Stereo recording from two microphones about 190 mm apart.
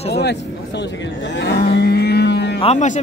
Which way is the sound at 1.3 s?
65° left (ahead or behind).